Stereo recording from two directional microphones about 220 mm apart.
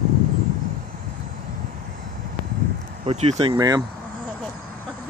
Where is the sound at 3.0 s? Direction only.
30° right (ahead or behind).